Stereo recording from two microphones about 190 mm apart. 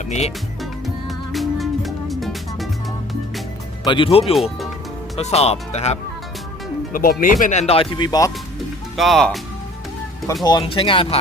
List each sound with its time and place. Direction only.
0.0 s speech: 40° left (ahead or behind)
0.6 s music: centre (ahead or behind)
3.8 s speech: 25° left (ahead or behind)
6.9 s speech: 50° left (ahead or behind)
7.7 s speech: 30° left (ahead or behind)
9.0 s speech: centre (ahead or behind)
10.4 s speech: 25° left (ahead or behind)